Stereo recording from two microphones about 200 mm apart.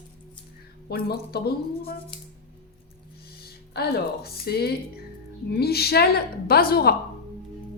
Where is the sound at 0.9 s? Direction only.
50° left (ahead or behind).